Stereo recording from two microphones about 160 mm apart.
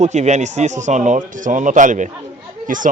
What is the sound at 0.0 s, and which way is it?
Speech, 45° right (ahead or behind).